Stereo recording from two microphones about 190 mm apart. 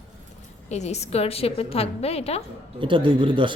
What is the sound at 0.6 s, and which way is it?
A woman's voice, 35° left (ahead or behind).